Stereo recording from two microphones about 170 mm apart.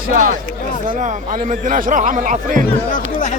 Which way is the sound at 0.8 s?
50° right (ahead or behind).